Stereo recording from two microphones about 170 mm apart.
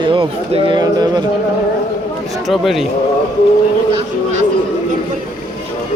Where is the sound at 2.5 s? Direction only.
Centre (ahead or behind).